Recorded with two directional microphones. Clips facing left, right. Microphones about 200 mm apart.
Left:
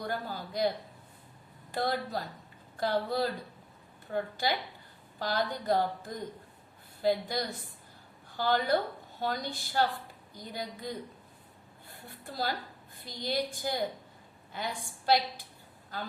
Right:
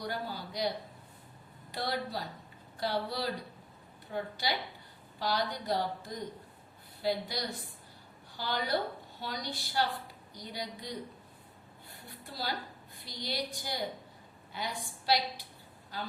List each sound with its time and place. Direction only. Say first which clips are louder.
0.0 s a woman's voice: left 2 dB; 50° left (ahead or behind)
1.7 s a woman's voice: left 3 dB; 50° left (ahead or behind)